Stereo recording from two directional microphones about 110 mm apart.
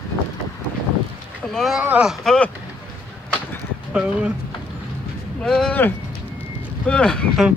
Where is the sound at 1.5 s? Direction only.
Centre (ahead or behind).